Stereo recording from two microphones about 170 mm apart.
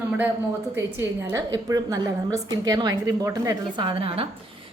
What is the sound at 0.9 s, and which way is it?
A woman's voice, 15° right (ahead or behind).